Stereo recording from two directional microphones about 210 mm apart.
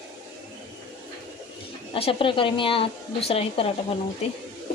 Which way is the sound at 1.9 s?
25° left (ahead or behind).